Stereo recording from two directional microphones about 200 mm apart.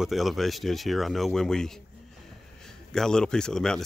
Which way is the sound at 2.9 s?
5° left (ahead or behind).